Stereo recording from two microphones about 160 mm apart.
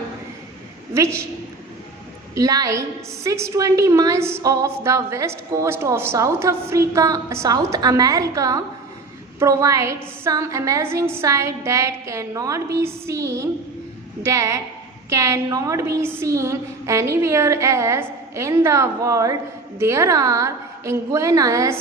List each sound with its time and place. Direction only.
0.9 s a woman's voice: 15° right (ahead or behind)
2.3 s a woman's voice: 25° right (ahead or behind)